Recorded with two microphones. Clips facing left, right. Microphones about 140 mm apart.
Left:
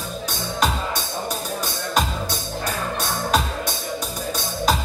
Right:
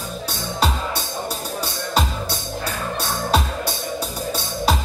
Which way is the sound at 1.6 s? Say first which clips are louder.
Right 2 dB; 35° right (ahead or behind).